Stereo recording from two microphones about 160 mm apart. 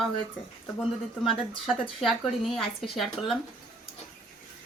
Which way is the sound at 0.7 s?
5° left (ahead or behind).